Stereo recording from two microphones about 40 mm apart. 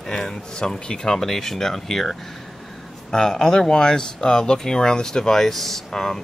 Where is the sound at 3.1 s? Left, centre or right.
Centre.